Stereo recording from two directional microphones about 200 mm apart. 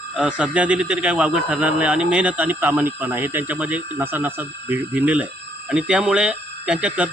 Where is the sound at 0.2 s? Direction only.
5° right (ahead or behind).